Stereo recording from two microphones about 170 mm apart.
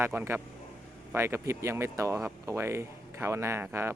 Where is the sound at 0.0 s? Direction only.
15° right (ahead or behind).